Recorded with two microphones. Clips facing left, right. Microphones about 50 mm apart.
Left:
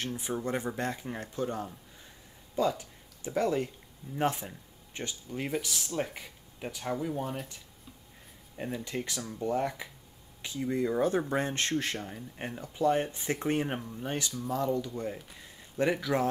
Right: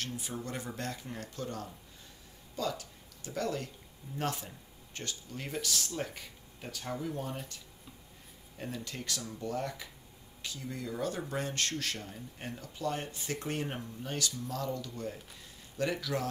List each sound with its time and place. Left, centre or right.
0.0 s speech: left